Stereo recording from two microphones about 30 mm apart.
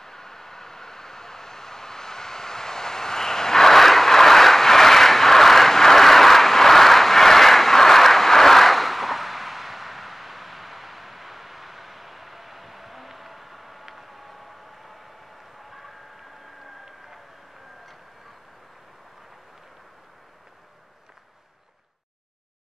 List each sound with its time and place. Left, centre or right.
0.0 s vehicle: centre
3.7 s vehicle: centre